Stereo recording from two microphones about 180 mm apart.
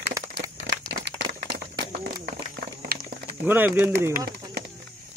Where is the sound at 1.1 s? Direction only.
70° right (ahead or behind).